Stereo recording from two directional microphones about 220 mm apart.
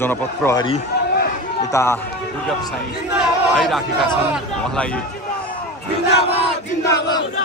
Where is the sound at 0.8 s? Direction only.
45° left (ahead or behind).